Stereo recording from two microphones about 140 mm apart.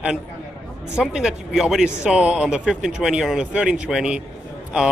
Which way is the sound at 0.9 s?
5° right (ahead or behind).